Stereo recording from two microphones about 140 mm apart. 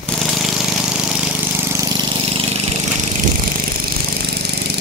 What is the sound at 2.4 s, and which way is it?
Engine, 45° right (ahead or behind).